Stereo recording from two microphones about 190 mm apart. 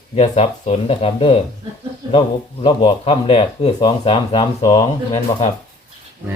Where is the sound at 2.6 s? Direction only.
25° left (ahead or behind).